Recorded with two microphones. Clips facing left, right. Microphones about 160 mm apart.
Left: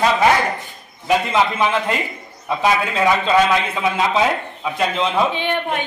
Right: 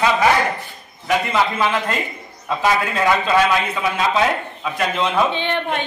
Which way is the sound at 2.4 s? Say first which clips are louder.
Left 1 dB; 10° left (ahead or behind).